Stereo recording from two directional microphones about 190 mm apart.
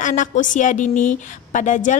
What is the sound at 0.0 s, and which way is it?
A woman's voice, 40° left (ahead or behind).